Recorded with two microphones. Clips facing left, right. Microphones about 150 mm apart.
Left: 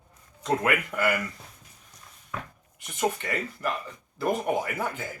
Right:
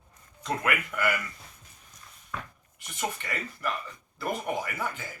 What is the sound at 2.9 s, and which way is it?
Speech, 35° left (ahead or behind).